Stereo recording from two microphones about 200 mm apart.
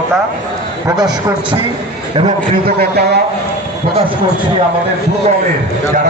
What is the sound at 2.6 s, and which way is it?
Speech, 50° right (ahead or behind).